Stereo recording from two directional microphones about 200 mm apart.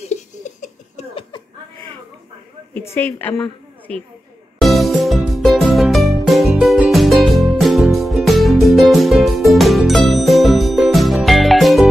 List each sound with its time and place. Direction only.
0.0 s laughter: 35° left (ahead or behind)
2.7 s a woman's voice: 10° left (ahead or behind)
4.6 s music: centre (ahead or behind)